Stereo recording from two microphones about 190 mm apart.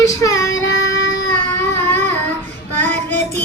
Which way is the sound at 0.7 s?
75° left (ahead or behind).